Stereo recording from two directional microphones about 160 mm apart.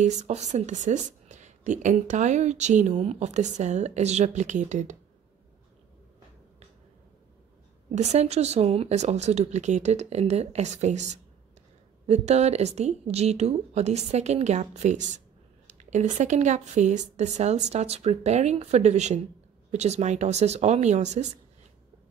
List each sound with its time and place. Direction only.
0.0 s speech: 45° right (ahead or behind)
7.9 s speech: 45° right (ahead or behind)